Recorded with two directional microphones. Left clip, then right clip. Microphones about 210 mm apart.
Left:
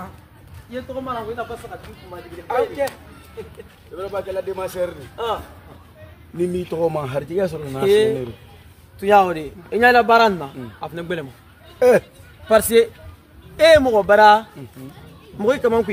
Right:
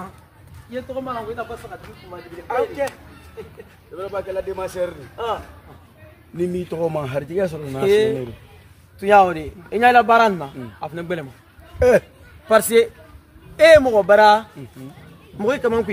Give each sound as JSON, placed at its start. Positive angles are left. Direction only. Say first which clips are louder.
{"t": 0.7, "sound": "speech", "louder": "even", "side_deg": -15}
{"t": 2.4, "sound": "speech", "louder": "left 1 dB", "side_deg": 5}
{"t": 3.9, "sound": "speech", "louder": "even", "side_deg": 5}
{"t": 7.8, "sound": "speech", "louder": "left 1 dB", "side_deg": -10}
{"t": 11.8, "sound": "speech", "louder": "left 1 dB", "side_deg": 5}
{"t": 12.4, "sound": "speech", "louder": "even", "side_deg": -15}